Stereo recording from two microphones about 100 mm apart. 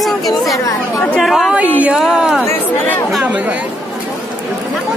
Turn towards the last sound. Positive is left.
turn(degrees=25)  # may be behind; listen again after turning